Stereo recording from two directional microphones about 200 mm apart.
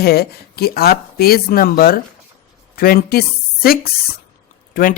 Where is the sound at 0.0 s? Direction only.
50° left (ahead or behind).